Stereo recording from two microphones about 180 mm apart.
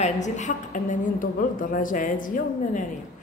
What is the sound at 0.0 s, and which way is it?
A woman's voice, 40° left (ahead or behind).